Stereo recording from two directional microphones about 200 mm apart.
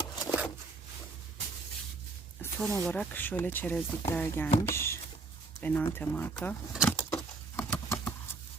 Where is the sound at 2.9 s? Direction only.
10° left (ahead or behind).